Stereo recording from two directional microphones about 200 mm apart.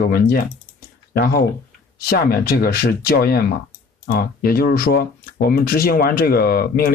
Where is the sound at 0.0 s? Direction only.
50° left (ahead or behind).